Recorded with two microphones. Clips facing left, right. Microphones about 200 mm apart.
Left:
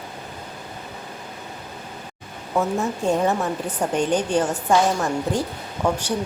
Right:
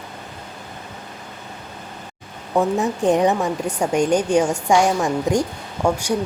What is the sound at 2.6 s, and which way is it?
Speech, 15° right (ahead or behind).